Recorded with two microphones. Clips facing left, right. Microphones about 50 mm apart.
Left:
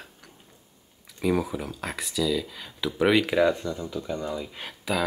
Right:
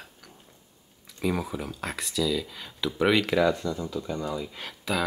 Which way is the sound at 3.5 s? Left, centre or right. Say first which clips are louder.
Right 1 dB; left.